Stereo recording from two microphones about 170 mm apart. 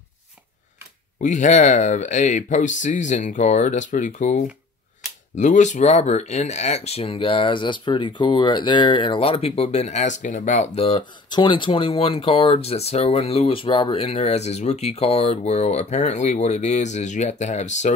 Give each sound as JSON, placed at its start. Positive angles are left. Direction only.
{"t": 1.2, "sound": "speech", "side_deg": 45}